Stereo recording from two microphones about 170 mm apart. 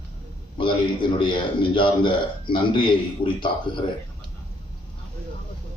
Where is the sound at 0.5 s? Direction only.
30° left (ahead or behind).